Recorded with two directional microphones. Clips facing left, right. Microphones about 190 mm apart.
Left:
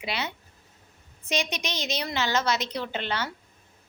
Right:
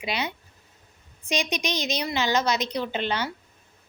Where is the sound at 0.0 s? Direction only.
15° right (ahead or behind).